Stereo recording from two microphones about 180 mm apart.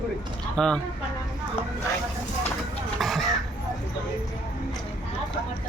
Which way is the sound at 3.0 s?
Centre (ahead or behind).